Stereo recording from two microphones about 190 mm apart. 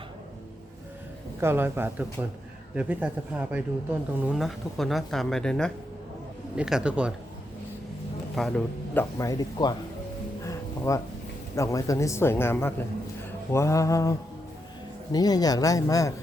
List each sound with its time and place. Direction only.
1.4 s speech: 10° right (ahead or behind)
8.4 s a man's voice: 5° left (ahead or behind)
9.1 s speech: 15° left (ahead or behind)
10.4 s music: 15° left (ahead or behind)
11.5 s speech: 15° left (ahead or behind)